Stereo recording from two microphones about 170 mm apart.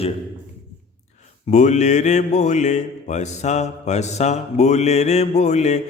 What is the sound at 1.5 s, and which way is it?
Mantra, 45° left (ahead or behind).